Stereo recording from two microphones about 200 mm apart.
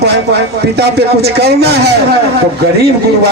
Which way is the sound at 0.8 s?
55° right (ahead or behind).